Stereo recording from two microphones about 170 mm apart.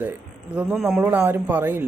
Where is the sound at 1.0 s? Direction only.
10° right (ahead or behind).